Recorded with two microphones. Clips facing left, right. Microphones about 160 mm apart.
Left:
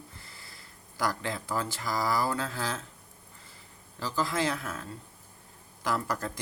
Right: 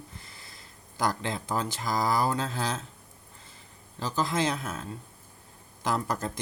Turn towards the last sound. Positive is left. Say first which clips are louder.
# right 2 dB
turn(degrees=-20)  # may be behind; listen again after turning